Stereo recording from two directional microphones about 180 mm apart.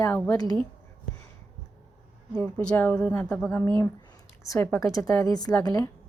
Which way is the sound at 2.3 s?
5° left (ahead or behind).